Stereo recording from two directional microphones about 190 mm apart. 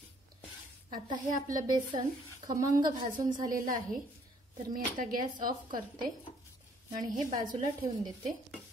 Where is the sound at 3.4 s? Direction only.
45° right (ahead or behind).